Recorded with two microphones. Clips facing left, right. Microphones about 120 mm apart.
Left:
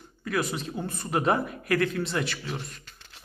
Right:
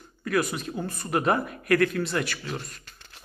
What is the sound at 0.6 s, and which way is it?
A man's voice, 25° left (ahead or behind).